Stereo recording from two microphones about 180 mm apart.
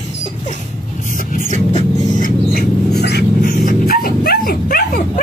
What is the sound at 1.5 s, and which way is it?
Vehicle, 40° right (ahead or behind).